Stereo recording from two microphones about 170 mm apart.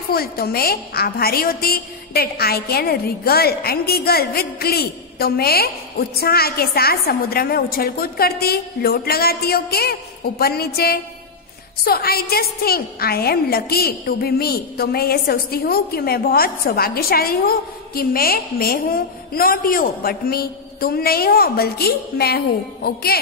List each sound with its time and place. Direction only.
0.1 s a woman's voice: 65° left (ahead or behind)